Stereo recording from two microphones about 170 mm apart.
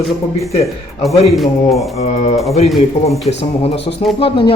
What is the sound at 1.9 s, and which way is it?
Speech, 40° left (ahead or behind).